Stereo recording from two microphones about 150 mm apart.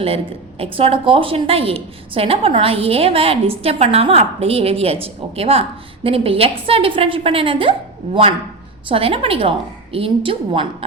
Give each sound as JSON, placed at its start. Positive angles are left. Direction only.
{"t": 0.6, "sound": "a woman's voice", "side_deg": -40}